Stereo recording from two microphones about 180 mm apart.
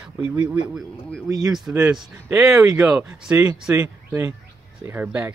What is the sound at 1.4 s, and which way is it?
Speech, centre (ahead or behind).